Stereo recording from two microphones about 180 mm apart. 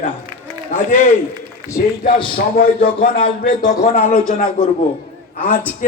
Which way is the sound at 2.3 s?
55° left (ahead or behind).